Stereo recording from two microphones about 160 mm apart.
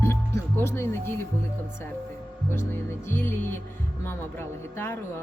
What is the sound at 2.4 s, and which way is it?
Speech, 15° left (ahead or behind).